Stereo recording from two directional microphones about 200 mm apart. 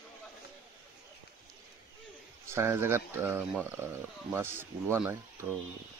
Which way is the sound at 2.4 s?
10° right (ahead or behind).